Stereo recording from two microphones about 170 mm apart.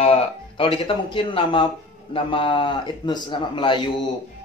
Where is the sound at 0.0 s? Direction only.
35° left (ahead or behind).